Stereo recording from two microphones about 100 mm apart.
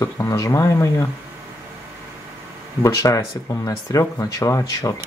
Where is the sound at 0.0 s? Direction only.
35° left (ahead or behind).